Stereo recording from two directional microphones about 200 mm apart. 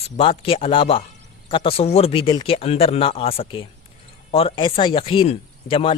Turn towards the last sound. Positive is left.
turn(degrees=25)  # may be behind; listen again after turning